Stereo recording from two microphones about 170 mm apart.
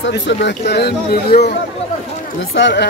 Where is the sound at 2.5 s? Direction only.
85° left.